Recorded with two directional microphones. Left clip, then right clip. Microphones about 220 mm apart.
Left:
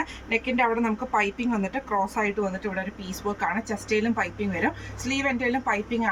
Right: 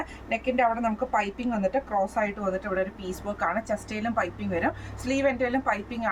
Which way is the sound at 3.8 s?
15° right (ahead or behind).